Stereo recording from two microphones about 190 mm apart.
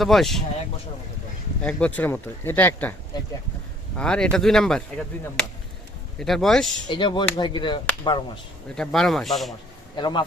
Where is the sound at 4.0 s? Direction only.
5° left (ahead or behind).